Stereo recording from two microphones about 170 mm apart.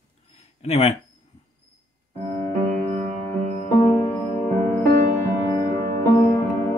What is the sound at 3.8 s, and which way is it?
Music, 20° left (ahead or behind).